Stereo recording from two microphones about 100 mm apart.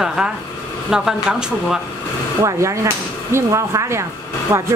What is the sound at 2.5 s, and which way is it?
Speech, 30° right (ahead or behind).